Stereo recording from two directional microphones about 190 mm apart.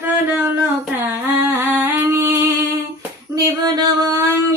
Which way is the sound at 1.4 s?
10° right (ahead or behind).